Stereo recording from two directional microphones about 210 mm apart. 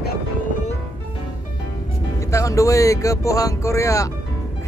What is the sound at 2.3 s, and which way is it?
Speech, 15° left (ahead or behind).